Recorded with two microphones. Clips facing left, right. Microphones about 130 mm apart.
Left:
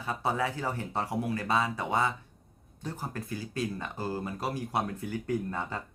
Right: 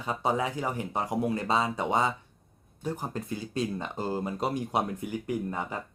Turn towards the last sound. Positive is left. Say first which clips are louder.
# right 1 dB
turn(degrees=-15)  # may be behind; listen again after turning